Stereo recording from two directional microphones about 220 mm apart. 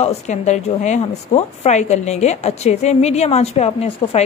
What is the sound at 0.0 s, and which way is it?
A woman's voice, 30° left (ahead or behind).